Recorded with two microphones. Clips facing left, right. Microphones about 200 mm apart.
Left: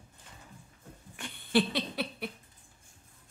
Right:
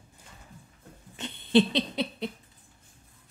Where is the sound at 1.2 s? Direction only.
20° right (ahead or behind).